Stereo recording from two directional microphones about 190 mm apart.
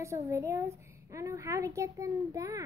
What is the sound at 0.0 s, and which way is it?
A woman's voice, 15° right (ahead or behind).